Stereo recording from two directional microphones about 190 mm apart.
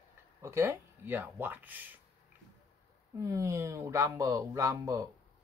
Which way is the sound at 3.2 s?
15° right (ahead or behind).